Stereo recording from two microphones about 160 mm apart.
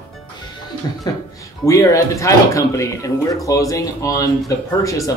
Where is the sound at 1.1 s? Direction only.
25° left (ahead or behind).